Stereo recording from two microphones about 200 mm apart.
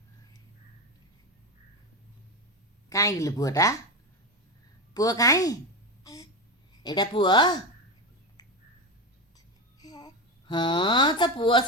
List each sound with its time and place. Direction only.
2.9 s speech: 15° left (ahead or behind)
4.9 s speech: 15° left (ahead or behind)
6.8 s speech: 20° left (ahead or behind)
9.8 s a child's voice: 20° left (ahead or behind)